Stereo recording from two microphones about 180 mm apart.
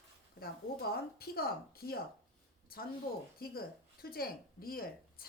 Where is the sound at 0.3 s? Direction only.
60° left (ahead or behind).